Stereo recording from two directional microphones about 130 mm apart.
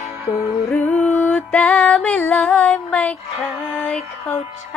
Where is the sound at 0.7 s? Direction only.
15° left (ahead or behind).